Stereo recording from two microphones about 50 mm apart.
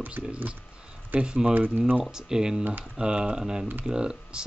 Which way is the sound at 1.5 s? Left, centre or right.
Right.